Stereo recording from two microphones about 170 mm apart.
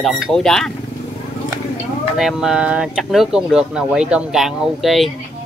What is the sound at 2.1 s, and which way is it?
Speech, 5° right (ahead or behind).